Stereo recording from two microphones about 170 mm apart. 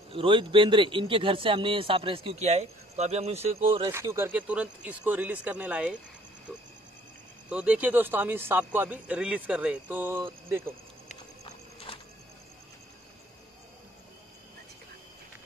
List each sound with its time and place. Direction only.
0.1 s a man's voice: 30° right (ahead or behind)
3.9 s speech: 15° right (ahead or behind)
7.4 s speech: 10° right (ahead or behind)
11.4 s horse: 35° left (ahead or behind)